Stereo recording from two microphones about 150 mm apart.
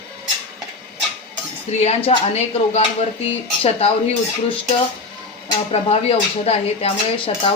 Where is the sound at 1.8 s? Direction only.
40° left (ahead or behind).